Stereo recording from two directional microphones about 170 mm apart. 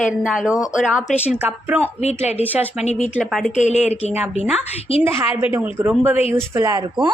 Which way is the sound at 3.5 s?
45° left (ahead or behind).